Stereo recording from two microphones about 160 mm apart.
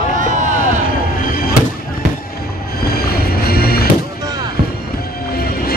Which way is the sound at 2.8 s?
75° left (ahead or behind).